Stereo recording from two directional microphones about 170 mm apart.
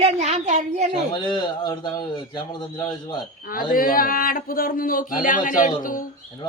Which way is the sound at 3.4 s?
55° left (ahead or behind).